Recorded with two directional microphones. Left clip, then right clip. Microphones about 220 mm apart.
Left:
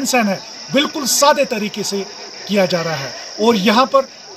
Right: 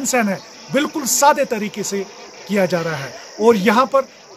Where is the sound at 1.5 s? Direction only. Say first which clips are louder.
Left 2 dB; 25° right (ahead or behind).